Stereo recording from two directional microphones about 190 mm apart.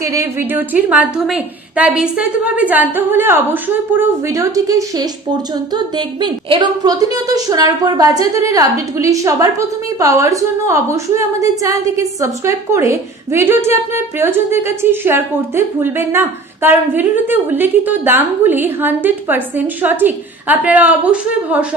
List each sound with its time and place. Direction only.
0.0 s a woman's voice: 15° right (ahead or behind)